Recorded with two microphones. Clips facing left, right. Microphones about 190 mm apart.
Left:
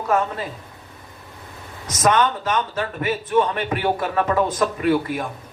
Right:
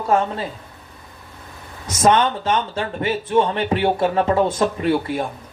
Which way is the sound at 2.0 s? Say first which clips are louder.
Right 2 dB; 30° right (ahead or behind).